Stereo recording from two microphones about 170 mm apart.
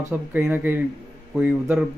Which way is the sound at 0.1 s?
10° right (ahead or behind).